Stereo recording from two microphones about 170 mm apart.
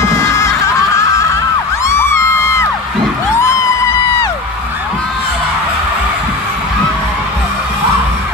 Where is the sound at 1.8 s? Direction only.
15° left (ahead or behind).